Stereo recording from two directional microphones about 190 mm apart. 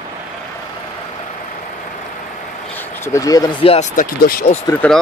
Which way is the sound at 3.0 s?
15° left (ahead or behind).